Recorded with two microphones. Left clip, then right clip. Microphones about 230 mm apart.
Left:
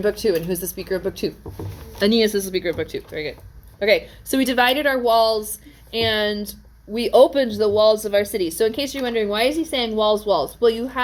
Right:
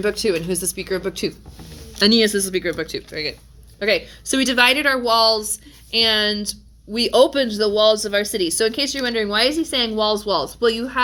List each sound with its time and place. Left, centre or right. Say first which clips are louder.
0.0 s a woman's voice: even; right